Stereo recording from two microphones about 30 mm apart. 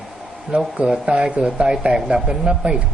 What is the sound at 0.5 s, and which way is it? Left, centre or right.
Speech, right.